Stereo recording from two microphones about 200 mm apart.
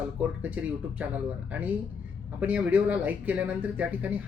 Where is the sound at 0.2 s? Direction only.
5° right (ahead or behind).